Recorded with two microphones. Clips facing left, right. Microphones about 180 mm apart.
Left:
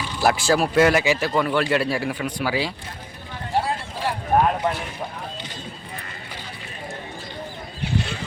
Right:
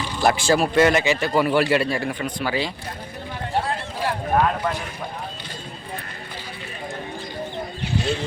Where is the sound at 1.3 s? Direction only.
10° right (ahead or behind); by 2.7 s 5° left (ahead or behind).